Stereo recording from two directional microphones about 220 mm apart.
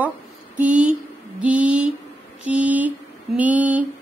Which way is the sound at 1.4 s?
5° right (ahead or behind).